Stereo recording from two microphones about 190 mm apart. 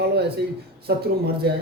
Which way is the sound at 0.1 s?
60° right (ahead or behind).